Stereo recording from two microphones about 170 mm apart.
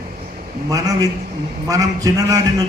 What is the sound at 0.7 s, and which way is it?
A man's voice, 20° right (ahead or behind).